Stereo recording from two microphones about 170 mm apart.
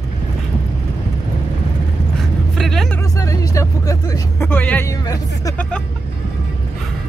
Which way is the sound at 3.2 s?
20° left (ahead or behind).